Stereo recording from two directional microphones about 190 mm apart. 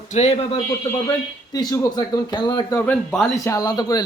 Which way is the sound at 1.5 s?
20° left (ahead or behind).